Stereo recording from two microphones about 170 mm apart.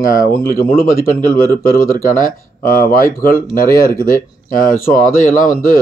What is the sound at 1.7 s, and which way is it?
Speech, 55° left (ahead or behind).